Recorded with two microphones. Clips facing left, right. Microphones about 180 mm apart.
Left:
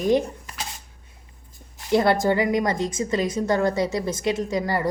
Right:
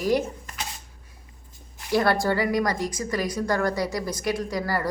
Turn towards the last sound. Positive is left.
turn(degrees=20)  # may be behind; listen again after turning